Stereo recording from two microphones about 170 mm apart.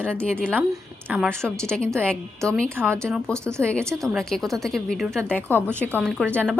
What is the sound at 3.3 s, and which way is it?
Speech, 15° right (ahead or behind).